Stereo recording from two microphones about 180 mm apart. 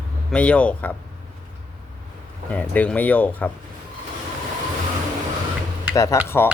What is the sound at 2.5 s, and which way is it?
Speech, 10° left (ahead or behind).